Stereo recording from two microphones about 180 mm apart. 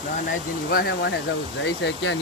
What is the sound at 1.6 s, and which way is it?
Speech, 90° left.